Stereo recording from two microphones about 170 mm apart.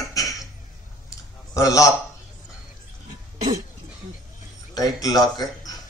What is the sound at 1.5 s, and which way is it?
Speech, 20° left (ahead or behind).